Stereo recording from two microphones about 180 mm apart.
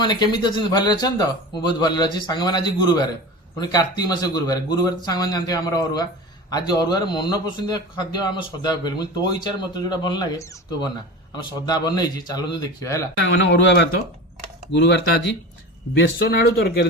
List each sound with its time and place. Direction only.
0.0 s a man's voice: 25° left (ahead or behind)
13.2 s speech: 75° left (ahead or behind)